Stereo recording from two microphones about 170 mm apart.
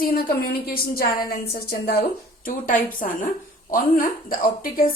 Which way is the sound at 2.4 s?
50° left (ahead or behind).